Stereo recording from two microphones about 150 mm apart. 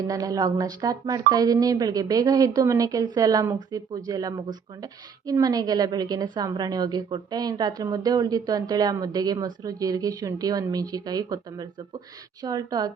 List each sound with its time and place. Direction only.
0.0 s speech: 25° right (ahead or behind)